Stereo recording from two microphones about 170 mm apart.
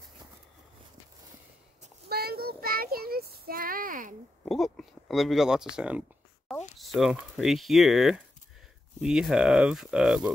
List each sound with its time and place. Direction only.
2.0 s child singing: 65° right (ahead or behind)
4.5 s speech: centre (ahead or behind)